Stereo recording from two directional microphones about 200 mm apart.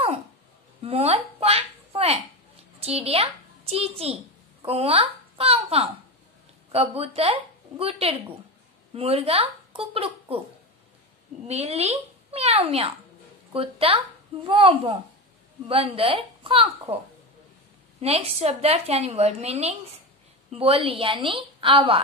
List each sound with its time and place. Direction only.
0.8 s a sound: 30° right (ahead or behind)
2.8 s a child's voice: 30° right (ahead or behind)
11.4 s a woman's voice: 30° right (ahead or behind)
18.0 s a woman's voice: 30° right (ahead or behind)